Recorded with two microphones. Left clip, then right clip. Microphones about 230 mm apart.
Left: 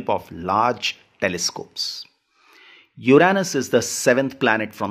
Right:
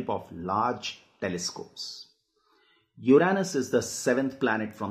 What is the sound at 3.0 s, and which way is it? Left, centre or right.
Speech, left.